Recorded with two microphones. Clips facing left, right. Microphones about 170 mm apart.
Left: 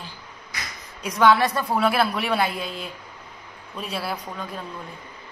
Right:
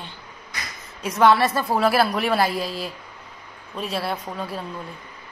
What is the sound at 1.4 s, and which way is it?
A woman's voice, 5° right (ahead or behind).